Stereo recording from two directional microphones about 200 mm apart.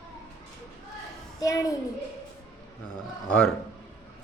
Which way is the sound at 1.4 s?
15° left (ahead or behind).